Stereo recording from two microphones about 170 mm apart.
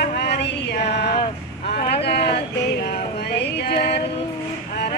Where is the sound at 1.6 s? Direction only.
70° left (ahead or behind).